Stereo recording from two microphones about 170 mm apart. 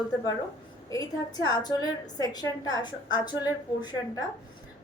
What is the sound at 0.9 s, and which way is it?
A woman's voice, 25° left (ahead or behind).